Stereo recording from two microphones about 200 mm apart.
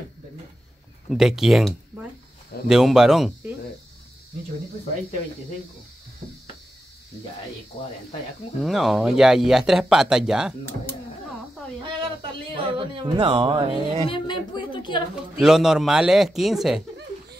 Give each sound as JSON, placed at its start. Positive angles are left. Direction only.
{"t": 1.0, "sound": "speech", "side_deg": 0}
{"t": 8.5, "sound": "speech", "side_deg": 0}
{"t": 11.8, "sound": "speech", "side_deg": -25}
{"t": 14.0, "sound": "a woman's voice", "side_deg": 25}
{"t": 15.1, "sound": "speech", "side_deg": -5}